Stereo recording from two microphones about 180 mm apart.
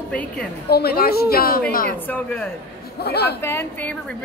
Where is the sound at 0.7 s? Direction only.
60° left (ahead or behind).